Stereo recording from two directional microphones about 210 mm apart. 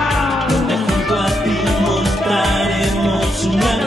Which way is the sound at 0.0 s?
Centre (ahead or behind).